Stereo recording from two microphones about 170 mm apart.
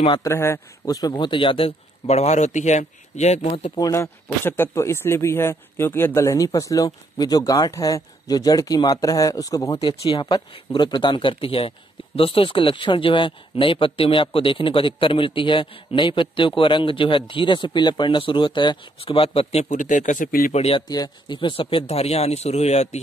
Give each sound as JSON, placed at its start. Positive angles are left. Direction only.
{"t": 0.2, "sound": "speech", "side_deg": 15}
{"t": 3.7, "sound": "speech", "side_deg": 20}
{"t": 20.5, "sound": "speech", "side_deg": 35}
{"t": 20.9, "sound": "speech", "side_deg": 25}